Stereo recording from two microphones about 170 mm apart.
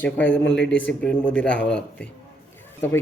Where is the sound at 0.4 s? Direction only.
90° left.